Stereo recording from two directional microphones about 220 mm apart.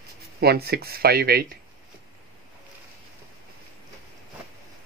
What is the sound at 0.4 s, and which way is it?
Speech, 45° right (ahead or behind).